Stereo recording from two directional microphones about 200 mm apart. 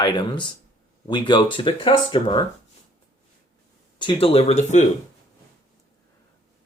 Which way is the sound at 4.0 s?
25° left (ahead or behind).